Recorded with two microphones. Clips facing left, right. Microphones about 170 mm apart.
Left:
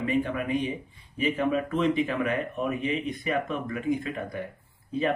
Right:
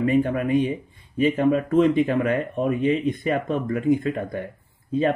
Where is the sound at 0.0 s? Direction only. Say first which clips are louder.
Right 6 dB; 45° right (ahead or behind).